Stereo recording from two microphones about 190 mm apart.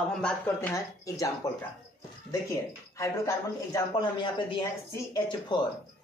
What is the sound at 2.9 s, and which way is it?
Speech, 15° left (ahead or behind).